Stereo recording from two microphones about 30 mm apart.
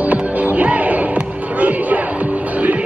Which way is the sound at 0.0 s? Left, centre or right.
Right.